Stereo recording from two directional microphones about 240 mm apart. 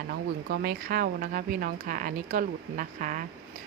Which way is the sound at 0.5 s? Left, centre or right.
Right.